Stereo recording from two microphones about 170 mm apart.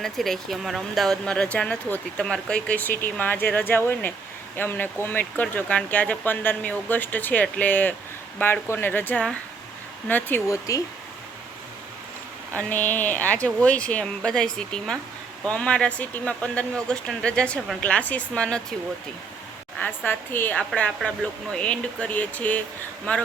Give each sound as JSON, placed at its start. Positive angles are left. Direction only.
{"t": 0.0, "sound": "speech", "side_deg": 0}
{"t": 12.5, "sound": "speech", "side_deg": 10}
{"t": 19.8, "sound": "speech", "side_deg": 10}